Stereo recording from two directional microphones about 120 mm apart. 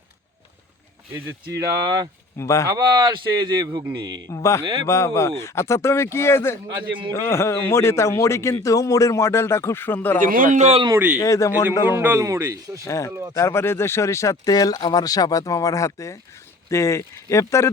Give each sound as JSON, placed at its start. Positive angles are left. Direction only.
{"t": 1.5, "sound": "speech", "side_deg": -30}
{"t": 2.4, "sound": "a man's voice", "side_deg": 25}
{"t": 2.6, "sound": "speech", "side_deg": -30}
{"t": 4.3, "sound": "a man's voice", "side_deg": 25}
{"t": 4.6, "sound": "a man's voice", "side_deg": -40}
{"t": 4.9, "sound": "a man's voice", "side_deg": 25}
{"t": 10.2, "sound": "a man's voice", "side_deg": -90}
{"t": 10.9, "sound": "speech", "side_deg": -10}
{"t": 11.2, "sound": "a man's voice", "side_deg": 25}
{"t": 11.9, "sound": "speech", "side_deg": -20}
{"t": 12.8, "sound": "a man's voice", "side_deg": 25}